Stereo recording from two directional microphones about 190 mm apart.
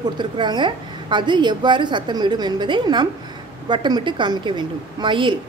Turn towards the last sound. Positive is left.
turn(degrees=-25)  # may be behind; listen again after turning